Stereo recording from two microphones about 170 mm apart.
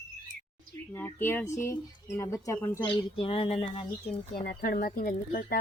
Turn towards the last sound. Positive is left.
turn(degrees=60)  # may be behind; listen again after turning